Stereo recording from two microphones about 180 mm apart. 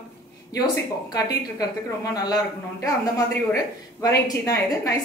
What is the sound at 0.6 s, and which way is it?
A woman's voice, 20° left (ahead or behind).